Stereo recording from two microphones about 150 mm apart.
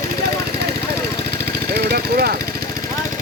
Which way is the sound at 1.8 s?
90° right.